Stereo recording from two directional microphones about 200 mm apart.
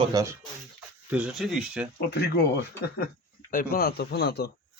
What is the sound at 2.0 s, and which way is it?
Speech, 55° left (ahead or behind).